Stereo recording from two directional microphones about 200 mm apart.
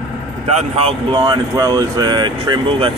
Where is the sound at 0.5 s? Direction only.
30° right (ahead or behind).